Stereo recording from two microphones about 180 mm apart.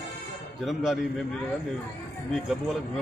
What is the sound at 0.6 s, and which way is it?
Speech, centre (ahead or behind).